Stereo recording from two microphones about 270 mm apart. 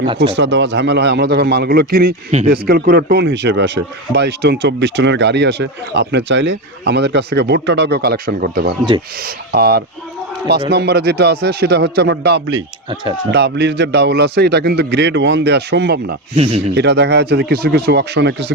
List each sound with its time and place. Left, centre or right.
0.3 s speech: right
16.3 s speech: right
16.7 s speech: right